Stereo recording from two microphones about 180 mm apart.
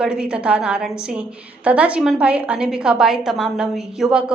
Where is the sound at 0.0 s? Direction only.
5° right (ahead or behind).